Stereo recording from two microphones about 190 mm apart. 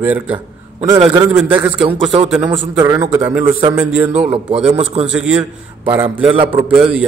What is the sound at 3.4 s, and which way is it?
Speech, 30° right (ahead or behind).